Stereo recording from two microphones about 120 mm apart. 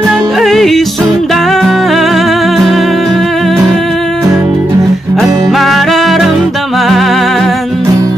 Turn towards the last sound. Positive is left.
turn(degrees=0)  # may be behind; listen again after turning